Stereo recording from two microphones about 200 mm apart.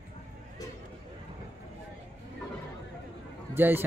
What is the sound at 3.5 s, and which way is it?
Run, 10° right (ahead or behind).